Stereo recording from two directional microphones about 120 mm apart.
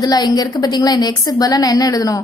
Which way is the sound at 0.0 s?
35° left (ahead or behind).